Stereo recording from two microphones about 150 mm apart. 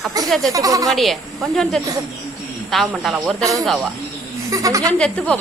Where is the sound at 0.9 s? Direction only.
Centre (ahead or behind).